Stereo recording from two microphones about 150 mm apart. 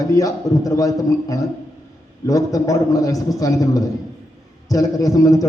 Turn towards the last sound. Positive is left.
turn(degrees=25)  # may be behind; listen again after turning